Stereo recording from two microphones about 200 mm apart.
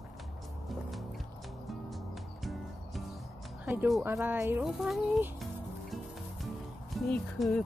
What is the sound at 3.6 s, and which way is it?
Speech, 5° right (ahead or behind).